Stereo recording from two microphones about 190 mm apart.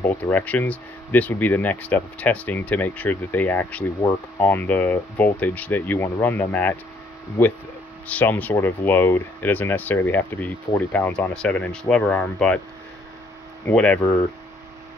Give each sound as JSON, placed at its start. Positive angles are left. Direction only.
{"t": 0.1, "sound": "speech", "side_deg": 10}
{"t": 13.7, "sound": "speech", "side_deg": 10}